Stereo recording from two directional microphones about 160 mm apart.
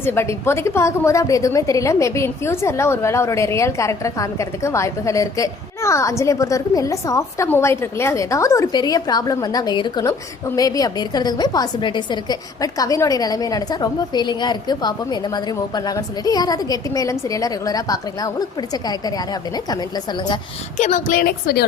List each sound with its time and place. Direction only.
0.0 s a woman's voice: 15° left (ahead or behind)
20.7 s a woman's voice: 50° left (ahead or behind); by 21.6 s 80° left